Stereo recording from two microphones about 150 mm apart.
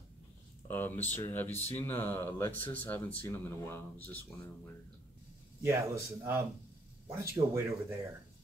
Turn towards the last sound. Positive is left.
turn(degrees=-20)  # may be behind; listen again after turning